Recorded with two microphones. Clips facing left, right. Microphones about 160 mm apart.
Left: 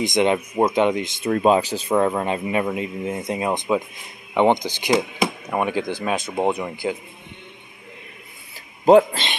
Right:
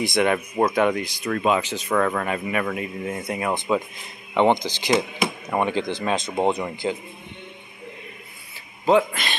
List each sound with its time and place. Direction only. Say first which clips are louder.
0.0 s speech: left 2 dB; 20° left (ahead or behind)
8.8 s speech: left 6 dB; 40° left (ahead or behind)